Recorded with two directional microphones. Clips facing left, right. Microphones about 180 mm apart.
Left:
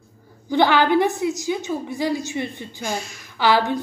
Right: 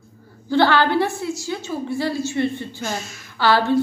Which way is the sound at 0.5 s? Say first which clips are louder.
Even; 15° left (ahead or behind).